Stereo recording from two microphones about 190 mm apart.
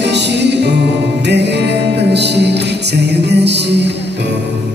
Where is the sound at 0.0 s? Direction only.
65° right (ahead or behind).